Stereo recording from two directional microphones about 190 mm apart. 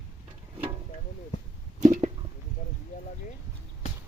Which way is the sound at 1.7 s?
35° right (ahead or behind).